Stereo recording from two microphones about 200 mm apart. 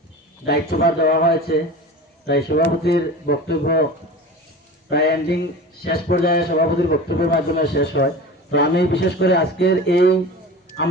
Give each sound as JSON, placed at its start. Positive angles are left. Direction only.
{"t": 0.4, "sound": "speech", "side_deg": 50}
{"t": 4.9, "sound": "a man's voice", "side_deg": 55}